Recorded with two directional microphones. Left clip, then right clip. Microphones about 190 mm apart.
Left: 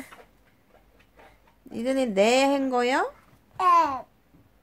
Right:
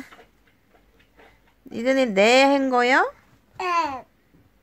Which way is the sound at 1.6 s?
20° right (ahead or behind).